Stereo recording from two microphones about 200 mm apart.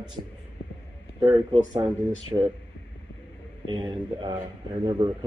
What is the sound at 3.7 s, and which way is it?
Speech, 25° right (ahead or behind).